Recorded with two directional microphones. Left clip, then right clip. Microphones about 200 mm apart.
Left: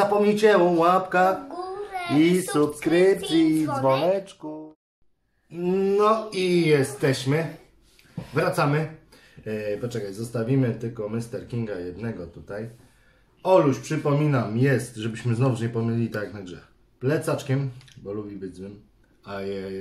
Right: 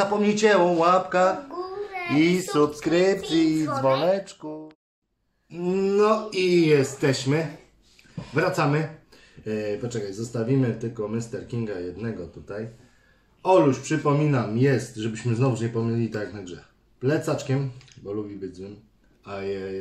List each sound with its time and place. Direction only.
0.0 s speech: centre (ahead or behind)
2.0 s a sound: 20° left (ahead or behind)
2.5 s speech: centre (ahead or behind)